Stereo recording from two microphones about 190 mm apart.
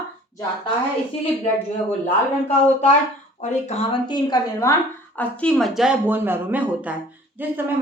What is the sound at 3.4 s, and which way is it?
Speech, 35° left (ahead or behind).